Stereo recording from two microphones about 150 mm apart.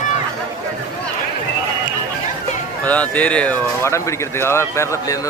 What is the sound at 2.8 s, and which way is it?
Speech, 10° left (ahead or behind).